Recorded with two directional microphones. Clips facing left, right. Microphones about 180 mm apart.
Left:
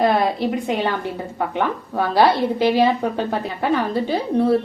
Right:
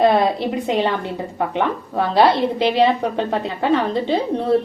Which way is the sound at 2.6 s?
20° right (ahead or behind).